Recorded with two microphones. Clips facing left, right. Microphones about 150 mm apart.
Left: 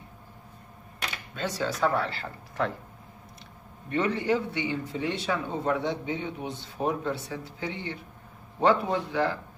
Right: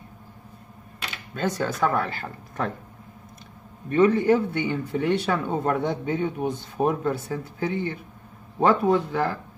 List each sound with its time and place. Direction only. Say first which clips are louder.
1.3 s speech: right 5 dB; 50° right (ahead or behind)
3.9 s speech: right 7 dB; 45° right (ahead or behind)